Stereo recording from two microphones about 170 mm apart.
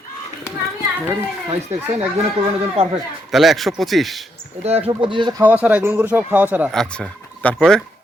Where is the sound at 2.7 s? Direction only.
35° right (ahead or behind).